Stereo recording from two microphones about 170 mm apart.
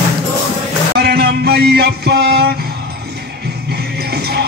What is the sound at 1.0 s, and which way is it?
Music, 70° right (ahead or behind).